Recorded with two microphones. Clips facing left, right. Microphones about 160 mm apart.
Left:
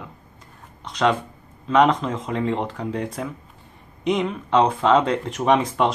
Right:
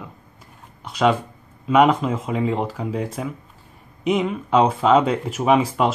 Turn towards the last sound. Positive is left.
turn(degrees=-5)  # may be behind; listen again after turning